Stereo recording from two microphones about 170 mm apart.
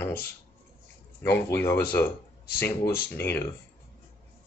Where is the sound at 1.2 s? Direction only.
10° left (ahead or behind).